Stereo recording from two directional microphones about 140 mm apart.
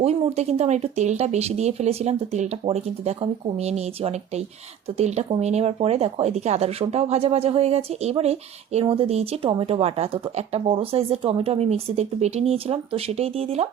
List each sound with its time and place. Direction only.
0.0 s speech: 50° right (ahead or behind)